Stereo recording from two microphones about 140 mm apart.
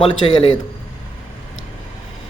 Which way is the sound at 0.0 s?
40° left (ahead or behind).